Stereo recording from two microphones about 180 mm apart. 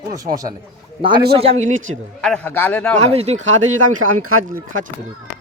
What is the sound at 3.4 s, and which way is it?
Speech, 90° right.